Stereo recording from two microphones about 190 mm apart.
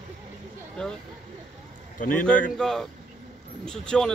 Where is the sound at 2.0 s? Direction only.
45° left (ahead or behind).